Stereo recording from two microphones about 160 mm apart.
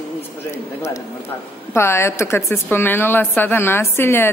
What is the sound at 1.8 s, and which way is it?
Speech, 15° left (ahead or behind).